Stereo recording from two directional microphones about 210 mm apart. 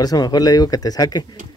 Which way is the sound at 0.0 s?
20° left (ahead or behind).